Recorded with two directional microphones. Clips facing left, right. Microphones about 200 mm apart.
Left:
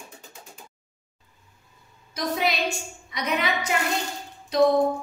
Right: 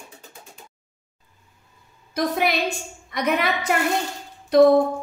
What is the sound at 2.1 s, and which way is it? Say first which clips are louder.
A woman's voice: right 4 dB; 55° right (ahead or behind).